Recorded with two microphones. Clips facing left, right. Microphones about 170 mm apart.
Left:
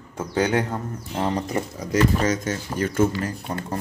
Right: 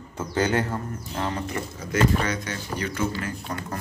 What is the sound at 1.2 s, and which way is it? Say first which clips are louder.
Speech: left 5 dB; 35° left (ahead or behind).